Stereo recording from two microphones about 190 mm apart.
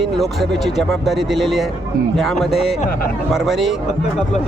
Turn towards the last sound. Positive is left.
turn(degrees=0)  # may be behind; listen again after turning